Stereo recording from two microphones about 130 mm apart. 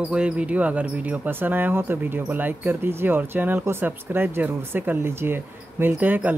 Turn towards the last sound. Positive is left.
turn(degrees=-15)  # may be behind; listen again after turning